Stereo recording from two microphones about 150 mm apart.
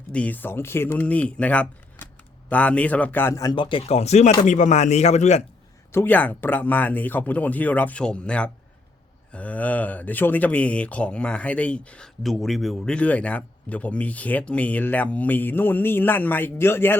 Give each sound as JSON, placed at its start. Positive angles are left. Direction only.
{"t": 0.1, "sound": "a man's voice", "side_deg": 10}
{"t": 5.9, "sound": "speech", "side_deg": 15}